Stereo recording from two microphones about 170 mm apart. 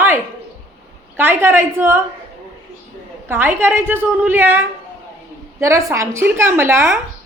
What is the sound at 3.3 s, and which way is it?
A woman's voice, 15° right (ahead or behind).